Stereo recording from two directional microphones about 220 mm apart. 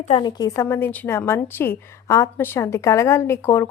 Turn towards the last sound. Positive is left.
turn(degrees=10)  # may be behind; listen again after turning